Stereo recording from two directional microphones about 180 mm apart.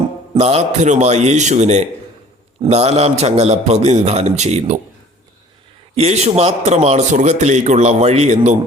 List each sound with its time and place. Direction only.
0.3 s a man's voice: 35° right (ahead or behind)
6.0 s a man's voice: 40° right (ahead or behind)